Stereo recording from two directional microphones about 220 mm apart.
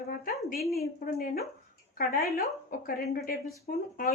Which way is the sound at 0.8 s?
40° left (ahead or behind).